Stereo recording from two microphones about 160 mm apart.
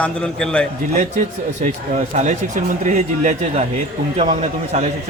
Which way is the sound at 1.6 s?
50° right (ahead or behind).